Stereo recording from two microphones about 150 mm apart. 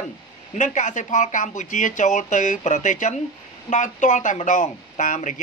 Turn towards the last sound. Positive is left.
turn(degrees=55)  # may be behind; listen again after turning